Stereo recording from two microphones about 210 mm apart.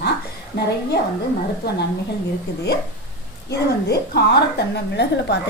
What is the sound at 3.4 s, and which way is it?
A woman's voice, 50° left (ahead or behind).